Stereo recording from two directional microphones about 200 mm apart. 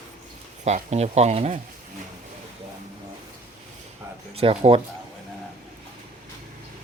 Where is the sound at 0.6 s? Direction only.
35° right (ahead or behind).